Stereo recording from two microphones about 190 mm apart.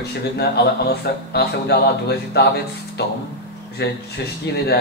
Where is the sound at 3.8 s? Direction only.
60° left (ahead or behind).